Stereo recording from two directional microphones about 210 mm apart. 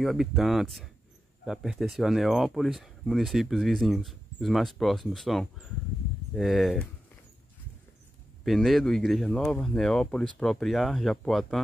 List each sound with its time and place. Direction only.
0.0 s speech: centre (ahead or behind)
8.5 s speech: centre (ahead or behind)